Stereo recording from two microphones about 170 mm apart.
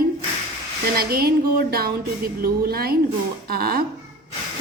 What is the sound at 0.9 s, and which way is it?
A woman's voice, 65° right (ahead or behind).